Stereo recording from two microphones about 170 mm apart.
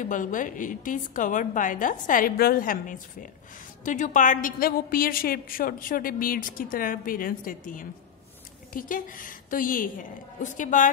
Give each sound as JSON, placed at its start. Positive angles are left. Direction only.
{"t": 0.0, "sound": "a woman's voice", "side_deg": 50}